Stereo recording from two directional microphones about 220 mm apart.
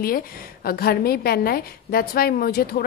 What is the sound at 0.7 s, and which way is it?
Speech, 45° left (ahead or behind).